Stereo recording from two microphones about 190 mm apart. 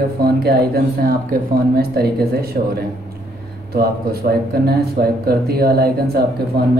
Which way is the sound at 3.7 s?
55° right (ahead or behind).